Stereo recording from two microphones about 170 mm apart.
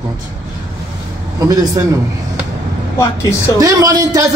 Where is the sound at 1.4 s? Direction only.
20° right (ahead or behind).